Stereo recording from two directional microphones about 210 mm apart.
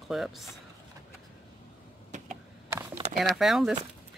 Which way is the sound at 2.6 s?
15° right (ahead or behind).